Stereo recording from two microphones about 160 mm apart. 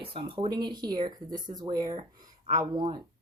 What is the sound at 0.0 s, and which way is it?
Speech, 35° right (ahead or behind).